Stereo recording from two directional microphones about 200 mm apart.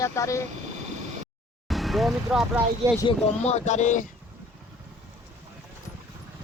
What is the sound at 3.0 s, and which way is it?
Speech, 35° left (ahead or behind).